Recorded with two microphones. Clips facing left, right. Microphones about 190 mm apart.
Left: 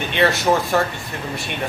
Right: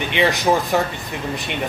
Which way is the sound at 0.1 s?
15° right (ahead or behind).